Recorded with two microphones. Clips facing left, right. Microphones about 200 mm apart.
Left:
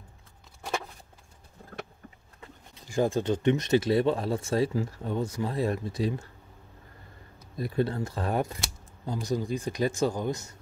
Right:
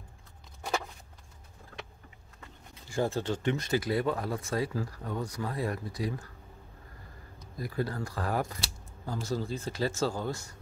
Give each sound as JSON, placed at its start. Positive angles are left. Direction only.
{"t": 2.9, "sound": "speech", "side_deg": 15}
{"t": 7.5, "sound": "speech", "side_deg": 25}